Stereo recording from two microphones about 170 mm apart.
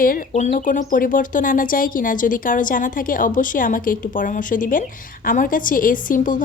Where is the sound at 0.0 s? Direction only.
55° left (ahead or behind).